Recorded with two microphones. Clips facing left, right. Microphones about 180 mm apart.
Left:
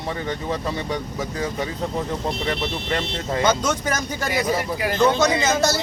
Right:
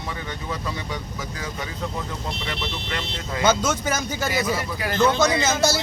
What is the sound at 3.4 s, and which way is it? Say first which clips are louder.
Speech: right 1 dB; 5° right (ahead or behind).